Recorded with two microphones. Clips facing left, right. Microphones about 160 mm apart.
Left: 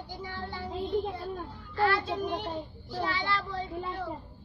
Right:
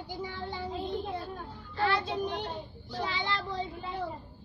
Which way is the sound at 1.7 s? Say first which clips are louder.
Left 2 dB; 20° right (ahead or behind).